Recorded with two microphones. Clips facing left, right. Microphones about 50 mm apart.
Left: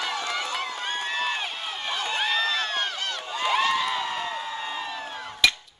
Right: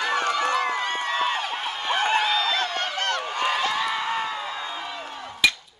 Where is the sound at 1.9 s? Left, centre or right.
Right.